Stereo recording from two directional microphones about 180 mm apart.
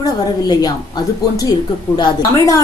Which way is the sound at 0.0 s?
20° left (ahead or behind).